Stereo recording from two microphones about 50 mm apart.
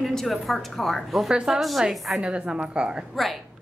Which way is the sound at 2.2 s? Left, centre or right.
Right.